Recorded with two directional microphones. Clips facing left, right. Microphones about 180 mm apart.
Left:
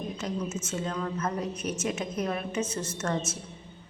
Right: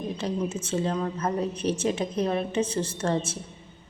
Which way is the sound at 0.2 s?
30° right (ahead or behind).